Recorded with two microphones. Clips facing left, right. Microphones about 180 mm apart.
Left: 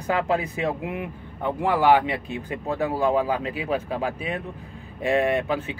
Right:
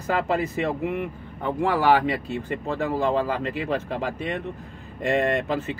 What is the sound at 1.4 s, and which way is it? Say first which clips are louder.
Speech: even; 15° left (ahead or behind).